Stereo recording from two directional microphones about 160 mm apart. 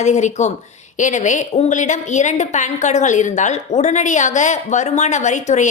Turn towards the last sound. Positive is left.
turn(degrees=50)  # may be behind; listen again after turning